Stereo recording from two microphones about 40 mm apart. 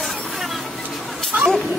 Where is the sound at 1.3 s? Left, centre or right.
Right.